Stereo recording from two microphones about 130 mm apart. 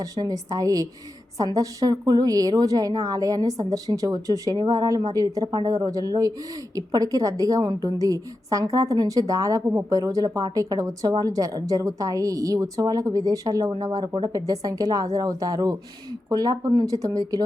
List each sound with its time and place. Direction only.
0.0 s a woman's voice: 25° right (ahead or behind)